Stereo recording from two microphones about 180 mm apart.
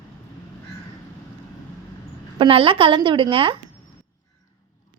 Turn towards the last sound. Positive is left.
turn(degrees=-30)  # may be behind; listen again after turning